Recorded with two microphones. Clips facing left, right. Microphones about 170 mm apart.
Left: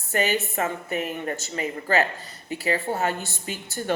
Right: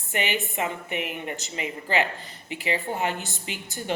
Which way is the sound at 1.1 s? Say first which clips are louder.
Left 4 dB; 15° right (ahead or behind).